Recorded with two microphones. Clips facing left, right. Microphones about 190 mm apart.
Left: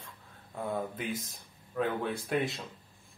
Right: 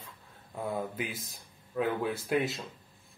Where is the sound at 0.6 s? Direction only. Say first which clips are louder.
Right 1 dB; 5° right (ahead or behind).